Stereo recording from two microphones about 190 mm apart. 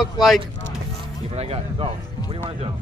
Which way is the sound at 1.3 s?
30° right (ahead or behind).